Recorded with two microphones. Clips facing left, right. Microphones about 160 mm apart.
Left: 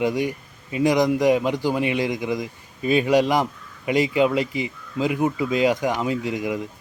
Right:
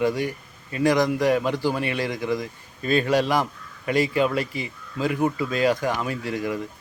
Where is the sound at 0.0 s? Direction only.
15° left (ahead or behind).